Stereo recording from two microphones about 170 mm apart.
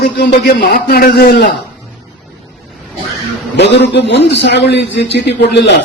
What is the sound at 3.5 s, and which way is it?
A man's voice, 90° left.